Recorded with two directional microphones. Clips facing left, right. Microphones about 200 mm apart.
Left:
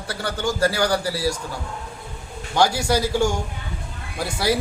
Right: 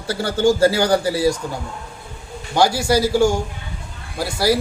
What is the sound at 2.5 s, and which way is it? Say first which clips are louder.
A man's voice: right 3 dB; 10° right (ahead or behind).